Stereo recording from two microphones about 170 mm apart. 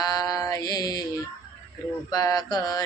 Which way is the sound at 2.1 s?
20° left (ahead or behind).